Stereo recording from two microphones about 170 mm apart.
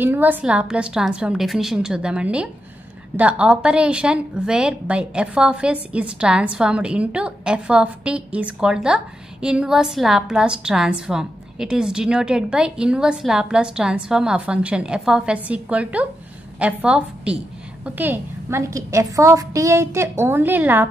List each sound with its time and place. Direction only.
0.0 s a woman's voice: 10° right (ahead or behind)